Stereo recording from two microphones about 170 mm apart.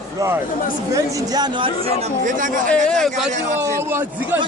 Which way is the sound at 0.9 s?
25° right (ahead or behind).